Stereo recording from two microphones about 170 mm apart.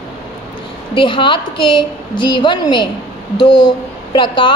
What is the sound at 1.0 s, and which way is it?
A woman's voice, 30° left (ahead or behind).